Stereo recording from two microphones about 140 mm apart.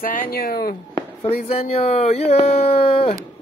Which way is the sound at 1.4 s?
45° left (ahead or behind).